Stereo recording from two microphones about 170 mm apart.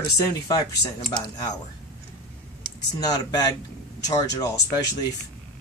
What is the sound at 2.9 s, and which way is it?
Speech, 25° left (ahead or behind).